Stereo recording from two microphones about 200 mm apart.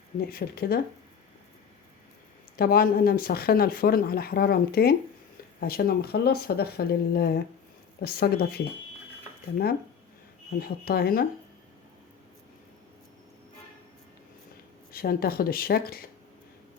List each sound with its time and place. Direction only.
0.3 s speech: 50° left (ahead or behind)
2.6 s speech: 50° left (ahead or behind)
10.6 s speech: 50° left (ahead or behind)
14.9 s speech: 50° left (ahead or behind)